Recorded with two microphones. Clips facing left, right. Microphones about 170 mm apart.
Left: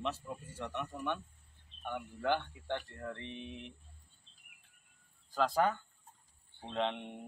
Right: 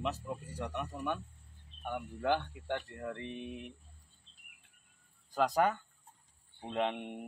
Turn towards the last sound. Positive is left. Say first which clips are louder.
# right 2 dB
turn(degrees=-10)  # may be behind; listen again after turning